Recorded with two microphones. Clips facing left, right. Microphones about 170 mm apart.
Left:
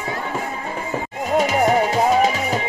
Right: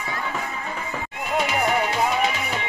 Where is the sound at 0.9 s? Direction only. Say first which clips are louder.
Left 7 dB; 40° left (ahead or behind).